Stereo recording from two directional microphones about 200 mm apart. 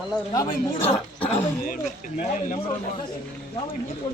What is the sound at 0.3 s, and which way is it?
Speech, 25° left (ahead or behind).